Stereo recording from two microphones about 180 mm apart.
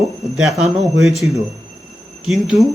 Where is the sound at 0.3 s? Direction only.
Centre (ahead or behind).